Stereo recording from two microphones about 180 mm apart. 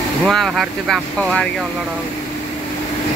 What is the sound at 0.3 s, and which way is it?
Speech, centre (ahead or behind).